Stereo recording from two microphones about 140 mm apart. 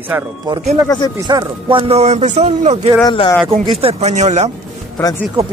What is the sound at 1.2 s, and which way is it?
Speech, 35° right (ahead or behind).